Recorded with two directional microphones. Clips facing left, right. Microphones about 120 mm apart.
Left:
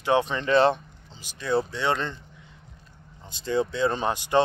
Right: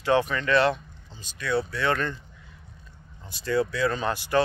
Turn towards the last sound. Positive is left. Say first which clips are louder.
# left 2 dB
turn(degrees=20)  # may be behind; listen again after turning